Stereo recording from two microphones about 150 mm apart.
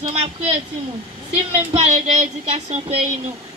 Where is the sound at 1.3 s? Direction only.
45° right (ahead or behind).